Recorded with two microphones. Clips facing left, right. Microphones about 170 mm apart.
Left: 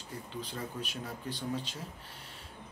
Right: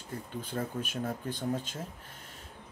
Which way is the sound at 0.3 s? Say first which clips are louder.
Right 5 dB; 50° right (ahead or behind).